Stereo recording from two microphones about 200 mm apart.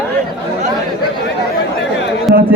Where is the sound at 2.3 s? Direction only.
Centre (ahead or behind).